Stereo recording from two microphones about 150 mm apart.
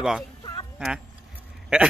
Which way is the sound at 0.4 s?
25° left (ahead or behind).